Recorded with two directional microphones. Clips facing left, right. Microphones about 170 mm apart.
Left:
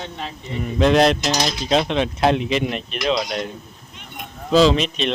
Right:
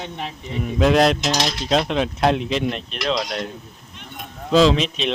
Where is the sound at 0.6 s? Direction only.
Centre (ahead or behind).